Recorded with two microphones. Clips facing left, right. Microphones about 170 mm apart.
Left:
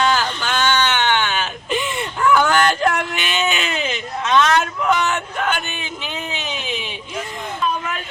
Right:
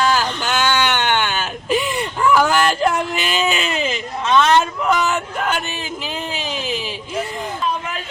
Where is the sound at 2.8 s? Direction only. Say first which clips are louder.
Right 1 dB; 35° right (ahead or behind).